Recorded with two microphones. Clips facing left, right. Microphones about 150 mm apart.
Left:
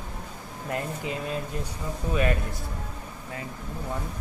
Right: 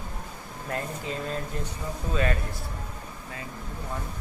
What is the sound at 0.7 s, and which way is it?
Speech, 15° left (ahead or behind).